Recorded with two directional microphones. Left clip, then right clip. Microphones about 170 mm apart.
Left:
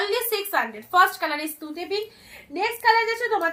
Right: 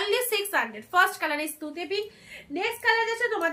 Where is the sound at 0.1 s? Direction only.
20° right (ahead or behind).